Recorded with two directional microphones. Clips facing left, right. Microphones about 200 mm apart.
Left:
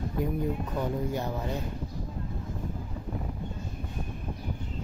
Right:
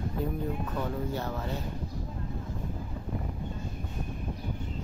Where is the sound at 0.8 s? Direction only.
15° left (ahead or behind).